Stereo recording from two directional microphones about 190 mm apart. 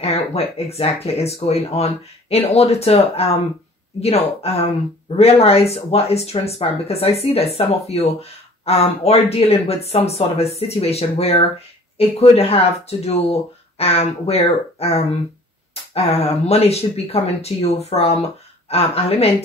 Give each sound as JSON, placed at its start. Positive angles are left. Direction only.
{"t": 0.0, "sound": "speech", "side_deg": 30}